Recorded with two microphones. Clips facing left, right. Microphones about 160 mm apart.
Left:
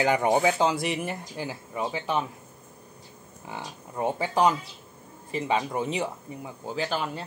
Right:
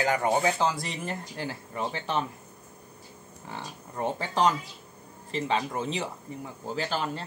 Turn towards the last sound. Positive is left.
turn(degrees=5)  # may be behind; listen again after turning